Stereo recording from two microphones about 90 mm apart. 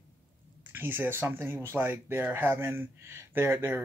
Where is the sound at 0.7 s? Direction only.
20° right (ahead or behind).